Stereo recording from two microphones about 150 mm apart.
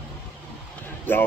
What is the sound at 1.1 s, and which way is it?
Speech, 15° left (ahead or behind).